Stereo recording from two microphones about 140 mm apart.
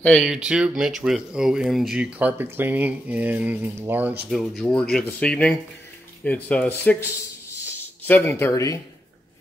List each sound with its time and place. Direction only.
0.2 s speech: 5° right (ahead or behind)
4.3 s speech: centre (ahead or behind)
8.1 s speech: 20° left (ahead or behind)